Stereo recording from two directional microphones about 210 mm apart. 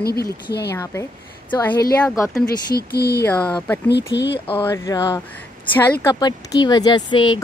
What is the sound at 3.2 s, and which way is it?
Speech, 5° left (ahead or behind).